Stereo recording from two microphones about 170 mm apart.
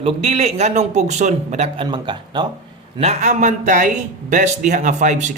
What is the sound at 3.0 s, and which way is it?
A man's voice, 40° right (ahead or behind).